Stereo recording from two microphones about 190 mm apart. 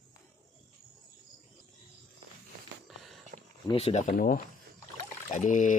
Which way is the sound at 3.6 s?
30° left (ahead or behind).